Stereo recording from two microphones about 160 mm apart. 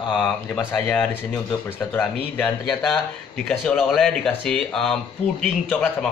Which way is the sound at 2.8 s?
Centre (ahead or behind).